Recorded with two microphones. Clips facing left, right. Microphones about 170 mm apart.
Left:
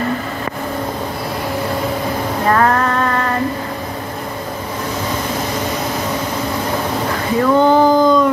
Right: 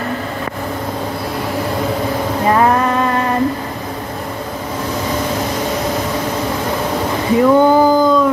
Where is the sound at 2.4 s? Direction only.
15° right (ahead or behind).